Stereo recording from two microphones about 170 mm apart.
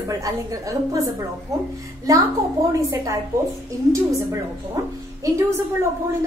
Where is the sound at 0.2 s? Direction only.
20° right (ahead or behind).